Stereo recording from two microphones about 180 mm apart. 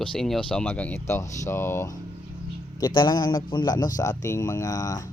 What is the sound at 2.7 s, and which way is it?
Speech, 25° left (ahead or behind).